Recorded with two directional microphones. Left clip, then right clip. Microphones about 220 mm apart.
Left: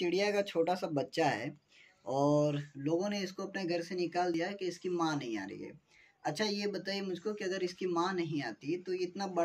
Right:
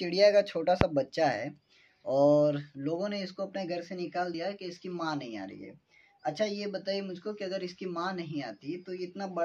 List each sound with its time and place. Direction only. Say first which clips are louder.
0.0 s speech: right 8 dB; 35° right (ahead or behind); by 9.4 s 15° right (ahead or behind)